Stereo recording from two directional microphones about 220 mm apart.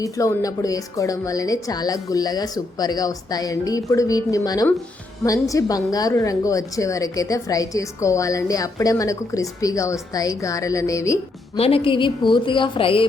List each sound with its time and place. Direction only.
0.0 s a woman's voice: 15° left (ahead or behind)
11.5 s a woman's voice: 25° left (ahead or behind)